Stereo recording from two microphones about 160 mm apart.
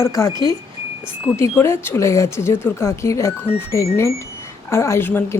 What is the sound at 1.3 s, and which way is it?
A woman's voice, 15° left (ahead or behind).